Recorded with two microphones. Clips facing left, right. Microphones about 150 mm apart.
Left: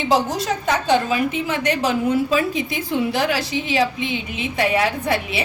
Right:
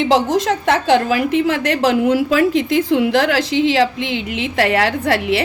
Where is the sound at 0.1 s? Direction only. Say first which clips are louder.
Right 1 dB; 90° right.